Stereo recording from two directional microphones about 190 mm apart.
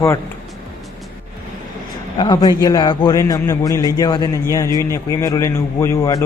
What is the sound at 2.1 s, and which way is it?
Speech, 25° left (ahead or behind).